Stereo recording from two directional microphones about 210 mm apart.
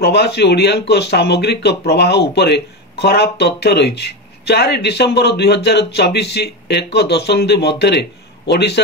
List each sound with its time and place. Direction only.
0.0 s speech: 50° left (ahead or behind)